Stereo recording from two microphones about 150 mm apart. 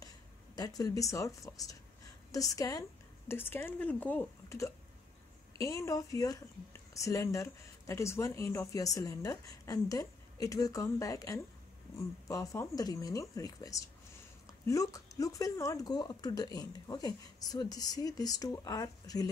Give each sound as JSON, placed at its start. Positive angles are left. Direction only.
{"t": 0.6, "sound": "a woman's voice", "side_deg": 25}